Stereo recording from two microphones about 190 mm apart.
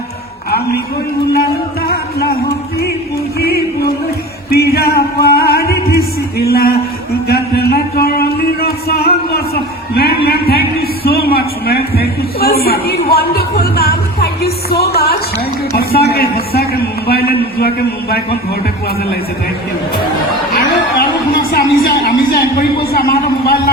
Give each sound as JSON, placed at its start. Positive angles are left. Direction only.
{"t": 1.9, "sound": "a man's voice", "side_deg": 55}
{"t": 4.5, "sound": "music", "side_deg": 55}
{"t": 5.9, "sound": "a sound", "side_deg": 55}
{"t": 15.7, "sound": "a man's voice", "side_deg": 55}
{"t": 20.5, "sound": "chatter", "side_deg": 55}
{"t": 21.6, "sound": "a man's voice", "side_deg": 60}